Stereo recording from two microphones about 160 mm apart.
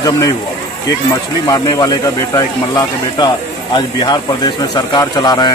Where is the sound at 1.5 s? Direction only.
25° left (ahead or behind).